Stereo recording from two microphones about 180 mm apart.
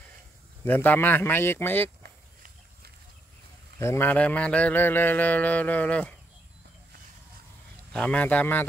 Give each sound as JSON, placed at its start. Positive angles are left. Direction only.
{"t": 0.7, "sound": "mantra", "side_deg": 10}
{"t": 2.0, "sound": "a sound", "side_deg": -60}
{"t": 3.8, "sound": "mantra", "side_deg": 15}
{"t": 7.9, "sound": "mantra", "side_deg": 5}